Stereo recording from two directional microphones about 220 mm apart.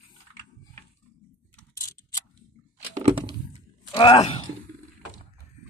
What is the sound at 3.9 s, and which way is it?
Speech, 20° left (ahead or behind).